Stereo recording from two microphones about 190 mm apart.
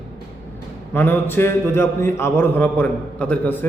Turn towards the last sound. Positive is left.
turn(degrees=5)  # may be behind; listen again after turning